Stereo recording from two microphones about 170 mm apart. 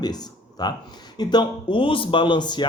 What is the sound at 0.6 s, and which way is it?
Speech, 25° left (ahead or behind).